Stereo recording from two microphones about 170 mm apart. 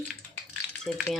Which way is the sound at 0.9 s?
5° left (ahead or behind).